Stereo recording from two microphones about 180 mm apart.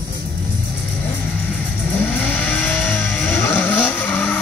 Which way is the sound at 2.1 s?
10° left (ahead or behind).